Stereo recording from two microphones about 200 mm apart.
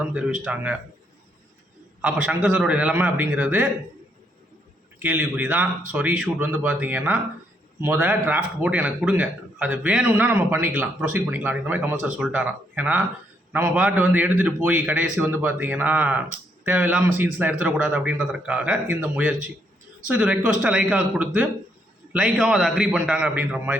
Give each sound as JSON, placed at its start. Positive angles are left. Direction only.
{"t": 0.0, "sound": "a man's voice", "side_deg": -5}
{"t": 2.0, "sound": "a man's voice", "side_deg": -10}
{"t": 4.9, "sound": "a man's voice", "side_deg": -10}